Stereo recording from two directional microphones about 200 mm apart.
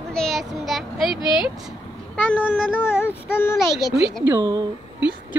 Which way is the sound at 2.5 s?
10° left (ahead or behind).